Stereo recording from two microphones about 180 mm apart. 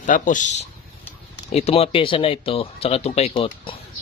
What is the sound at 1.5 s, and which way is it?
Speech, 35° left (ahead or behind).